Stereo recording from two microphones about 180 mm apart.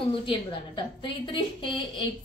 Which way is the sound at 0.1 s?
30° left (ahead or behind).